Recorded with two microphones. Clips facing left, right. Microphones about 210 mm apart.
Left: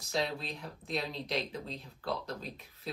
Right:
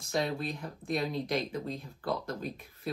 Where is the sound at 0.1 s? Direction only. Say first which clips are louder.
Right 3 dB; 50° right (ahead or behind).